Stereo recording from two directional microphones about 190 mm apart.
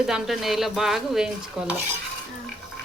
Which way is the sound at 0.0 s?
Centre (ahead or behind).